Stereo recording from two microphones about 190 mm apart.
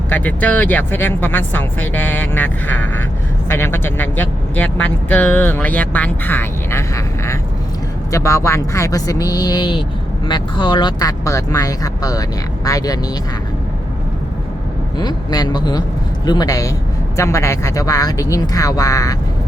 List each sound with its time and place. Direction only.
0.1 s speech: 10° left (ahead or behind)
14.9 s speech: 20° left (ahead or behind)